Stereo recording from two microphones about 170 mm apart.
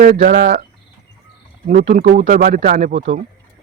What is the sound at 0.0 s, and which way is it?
Speech, 55° right (ahead or behind).